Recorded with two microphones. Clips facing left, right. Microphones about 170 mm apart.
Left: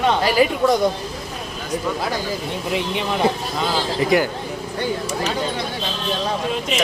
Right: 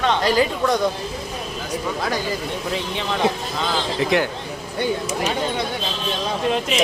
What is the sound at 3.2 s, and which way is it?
Speech, 5° left (ahead or behind).